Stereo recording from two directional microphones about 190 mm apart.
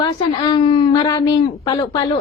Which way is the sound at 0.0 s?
25° left (ahead or behind).